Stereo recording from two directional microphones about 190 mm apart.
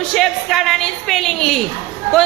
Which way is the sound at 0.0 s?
Centre (ahead or behind).